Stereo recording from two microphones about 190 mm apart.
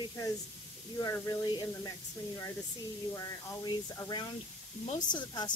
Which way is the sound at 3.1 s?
20° left (ahead or behind).